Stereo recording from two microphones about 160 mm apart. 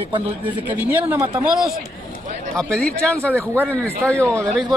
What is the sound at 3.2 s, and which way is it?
Speech, 15° right (ahead or behind).